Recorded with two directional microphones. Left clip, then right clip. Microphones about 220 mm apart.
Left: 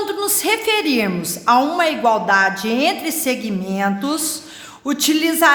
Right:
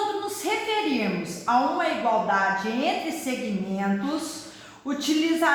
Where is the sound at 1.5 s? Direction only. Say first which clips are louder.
Left 8 dB; 55° left (ahead or behind).